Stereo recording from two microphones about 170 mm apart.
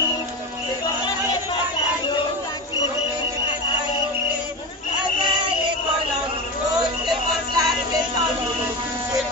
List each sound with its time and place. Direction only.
6.8 s music: 20° right (ahead or behind)